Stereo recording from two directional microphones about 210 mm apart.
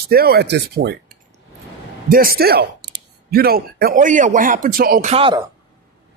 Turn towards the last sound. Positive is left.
turn(degrees=-25)  # may be behind; listen again after turning